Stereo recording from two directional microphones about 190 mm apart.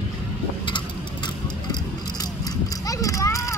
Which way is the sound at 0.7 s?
25° left (ahead or behind).